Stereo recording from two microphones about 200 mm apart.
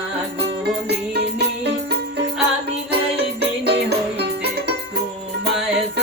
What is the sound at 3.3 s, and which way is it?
Music, 55° right (ahead or behind).